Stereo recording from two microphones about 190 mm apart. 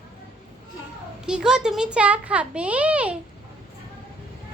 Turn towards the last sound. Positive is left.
turn(degrees=-5)  # may be behind; listen again after turning